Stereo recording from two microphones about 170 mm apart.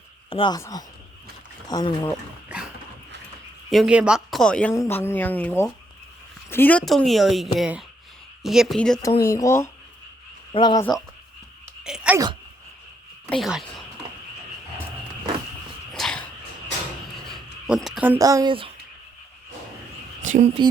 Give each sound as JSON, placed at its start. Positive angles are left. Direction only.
{"t": 0.3, "sound": "speech", "side_deg": 30}
{"t": 2.5, "sound": "dog", "side_deg": -5}
{"t": 3.7, "sound": "a woman's voice", "side_deg": -5}
{"t": 9.2, "sound": "speech", "side_deg": 15}
{"t": 11.8, "sound": "sneeze", "side_deg": -5}
{"t": 13.3, "sound": "speech", "side_deg": 0}
{"t": 15.9, "sound": "a sound", "side_deg": 5}
{"t": 17.3, "sound": "insect", "side_deg": 0}
{"t": 18.2, "sound": "speech", "side_deg": -20}
{"t": 20.2, "sound": "speech", "side_deg": -45}